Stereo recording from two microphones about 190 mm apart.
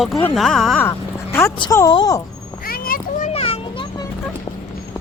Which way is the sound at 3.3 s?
30° left (ahead or behind).